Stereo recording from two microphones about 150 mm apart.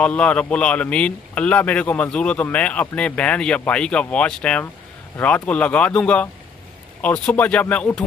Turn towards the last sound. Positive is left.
turn(degrees=10)  # may be behind; listen again after turning